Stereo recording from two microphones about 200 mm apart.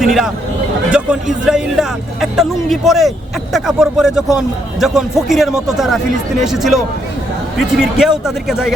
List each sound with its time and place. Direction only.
0.0 s hubbub: centre (ahead or behind)
0.9 s speech: 5° right (ahead or behind)